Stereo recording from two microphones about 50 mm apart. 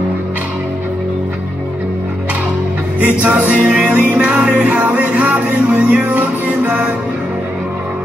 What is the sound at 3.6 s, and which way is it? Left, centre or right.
Music, right.